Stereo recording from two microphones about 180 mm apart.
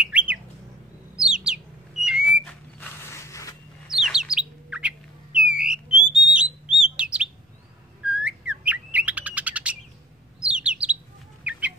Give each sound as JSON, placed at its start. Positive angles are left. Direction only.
{"t": 0.0, "sound": "bird", "side_deg": -5}
{"t": 2.8, "sound": "mechanisms", "side_deg": 15}
{"t": 3.9, "sound": "bird", "side_deg": -5}
{"t": 11.5, "sound": "chicken", "side_deg": -5}